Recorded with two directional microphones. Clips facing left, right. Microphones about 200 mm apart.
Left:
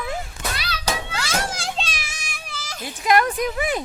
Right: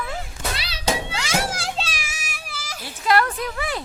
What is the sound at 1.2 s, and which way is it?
Children playing, 10° right (ahead or behind).